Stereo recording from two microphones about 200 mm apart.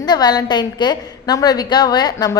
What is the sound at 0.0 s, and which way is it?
A woman's voice, 20° left (ahead or behind).